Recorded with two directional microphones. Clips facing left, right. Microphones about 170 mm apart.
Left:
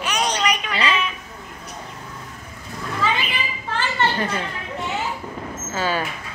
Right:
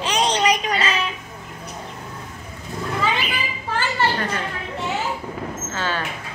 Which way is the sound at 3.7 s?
10° right (ahead or behind).